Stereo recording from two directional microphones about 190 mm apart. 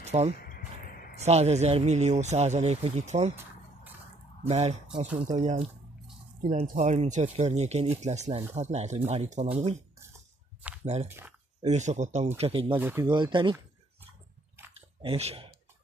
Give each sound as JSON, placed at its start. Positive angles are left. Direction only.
{"t": 0.0, "sound": "speech", "side_deg": -35}
{"t": 0.4, "sound": "a sound", "side_deg": 50}
{"t": 1.2, "sound": "speech", "side_deg": -35}
{"t": 4.5, "sound": "speech", "side_deg": -35}
{"t": 10.8, "sound": "speech", "side_deg": -35}
{"t": 11.1, "sound": "speech", "side_deg": -10}
{"t": 11.6, "sound": "speech", "side_deg": -35}
{"t": 12.7, "sound": "speech", "side_deg": -10}
{"t": 13.1, "sound": "speech", "side_deg": -25}
{"t": 14.7, "sound": "chewing", "side_deg": -30}